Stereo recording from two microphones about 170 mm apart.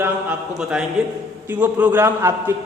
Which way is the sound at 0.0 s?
5° right (ahead or behind).